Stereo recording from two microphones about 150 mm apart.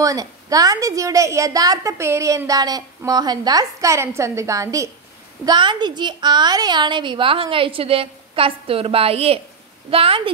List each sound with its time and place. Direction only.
0.0 s a woman's voice: 25° right (ahead or behind)